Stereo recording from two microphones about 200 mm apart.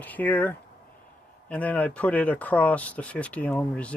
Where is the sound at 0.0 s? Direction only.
10° left (ahead or behind).